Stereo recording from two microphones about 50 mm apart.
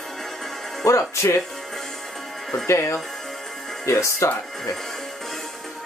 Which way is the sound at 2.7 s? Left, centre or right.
Left.